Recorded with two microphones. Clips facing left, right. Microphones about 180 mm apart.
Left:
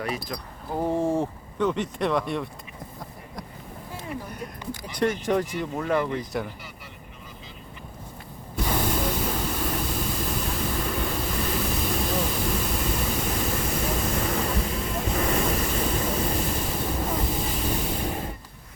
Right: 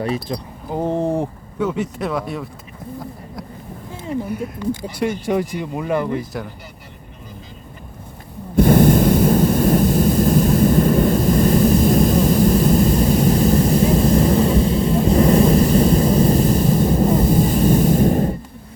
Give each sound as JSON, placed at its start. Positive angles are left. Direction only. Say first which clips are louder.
{"t": 0.0, "sound": "speech", "louder": "right 8 dB", "side_deg": -30}
{"t": 1.6, "sound": "speech", "louder": "right 3 dB", "side_deg": -5}
{"t": 4.3, "sound": "speech", "louder": "right 11 dB", "side_deg": -5}
{"t": 8.5, "sound": "a sound", "louder": "right 14 dB", "side_deg": -50}